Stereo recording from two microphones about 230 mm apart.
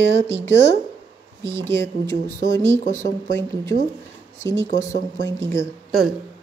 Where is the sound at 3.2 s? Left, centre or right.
Centre.